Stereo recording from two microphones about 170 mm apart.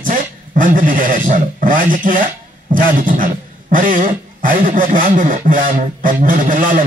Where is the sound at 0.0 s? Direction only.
50° right (ahead or behind).